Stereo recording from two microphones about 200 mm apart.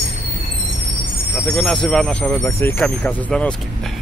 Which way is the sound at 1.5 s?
5° left (ahead or behind).